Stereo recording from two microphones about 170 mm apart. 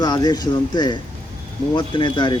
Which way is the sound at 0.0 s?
25° left (ahead or behind).